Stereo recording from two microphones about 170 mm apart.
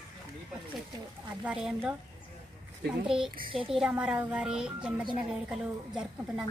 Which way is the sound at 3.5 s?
30° right (ahead or behind).